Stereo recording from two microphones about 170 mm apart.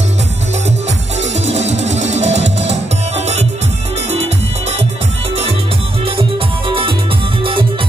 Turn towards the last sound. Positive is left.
turn(degrees=-30)  # may be behind; listen again after turning